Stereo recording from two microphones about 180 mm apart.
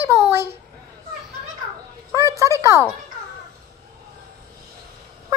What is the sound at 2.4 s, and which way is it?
Speech, 15° right (ahead or behind).